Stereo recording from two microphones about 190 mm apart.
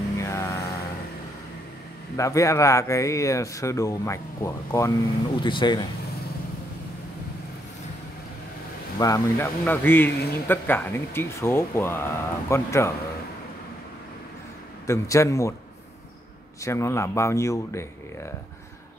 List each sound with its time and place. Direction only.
0.2 s mantra: 15° left (ahead or behind)
2.1 s speech: 15° left (ahead or behind)
8.9 s speech: 15° left (ahead or behind)
14.9 s speech: 15° left (ahead or behind)
16.6 s speech: 15° left (ahead or behind)